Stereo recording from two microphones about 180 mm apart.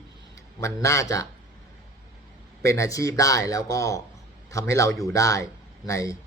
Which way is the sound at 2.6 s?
15° left (ahead or behind).